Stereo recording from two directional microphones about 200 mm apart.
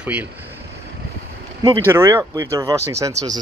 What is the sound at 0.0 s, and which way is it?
Speech, 5° right (ahead or behind).